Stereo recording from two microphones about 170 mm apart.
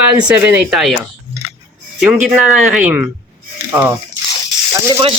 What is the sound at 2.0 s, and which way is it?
Speech, 5° right (ahead or behind).